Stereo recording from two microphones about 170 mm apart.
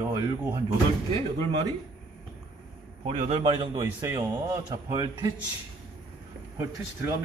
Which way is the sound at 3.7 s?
15° right (ahead or behind).